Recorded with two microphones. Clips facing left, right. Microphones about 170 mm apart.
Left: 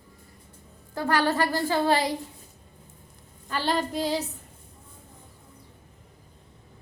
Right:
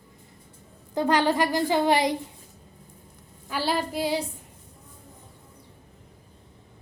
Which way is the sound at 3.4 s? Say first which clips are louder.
Even; 10° right (ahead or behind).